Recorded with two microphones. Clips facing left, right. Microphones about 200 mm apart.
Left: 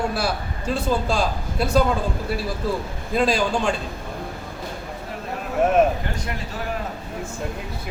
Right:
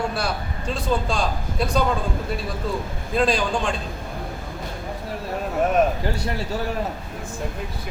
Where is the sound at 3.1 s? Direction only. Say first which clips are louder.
Left 1 dB; centre (ahead or behind).